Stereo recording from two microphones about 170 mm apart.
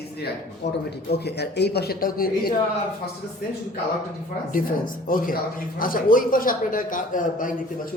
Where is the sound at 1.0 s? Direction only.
75° left (ahead or behind).